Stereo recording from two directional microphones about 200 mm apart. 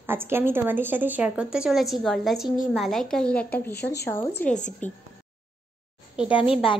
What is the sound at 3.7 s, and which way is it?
Speech, 55° left (ahead or behind).